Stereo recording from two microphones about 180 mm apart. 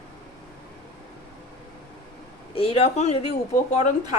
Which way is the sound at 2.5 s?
35° left (ahead or behind).